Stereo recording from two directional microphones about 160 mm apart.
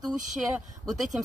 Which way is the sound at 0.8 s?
Centre (ahead or behind).